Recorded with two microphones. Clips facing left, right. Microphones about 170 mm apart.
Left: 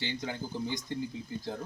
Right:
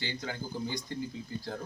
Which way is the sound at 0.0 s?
20° left (ahead or behind).